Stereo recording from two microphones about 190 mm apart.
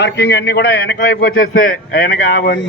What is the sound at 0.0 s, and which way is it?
A man's voice, 60° left (ahead or behind).